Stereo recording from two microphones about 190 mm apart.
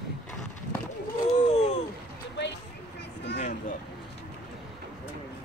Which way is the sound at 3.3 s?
40° left (ahead or behind).